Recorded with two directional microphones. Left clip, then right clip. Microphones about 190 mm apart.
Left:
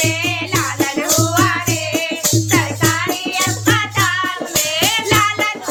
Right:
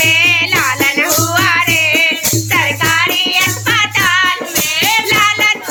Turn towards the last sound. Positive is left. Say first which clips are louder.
# right 5 dB
turn(degrees=-10)  # may be behind; listen again after turning